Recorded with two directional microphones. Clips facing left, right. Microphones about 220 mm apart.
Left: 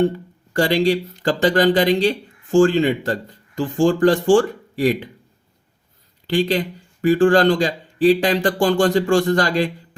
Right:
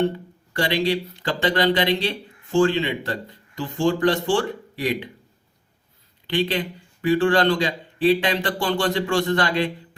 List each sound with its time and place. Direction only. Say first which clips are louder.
0.5 s speech: left 5 dB; 45° left (ahead or behind)
6.2 s speech: left 4 dB; 45° left (ahead or behind)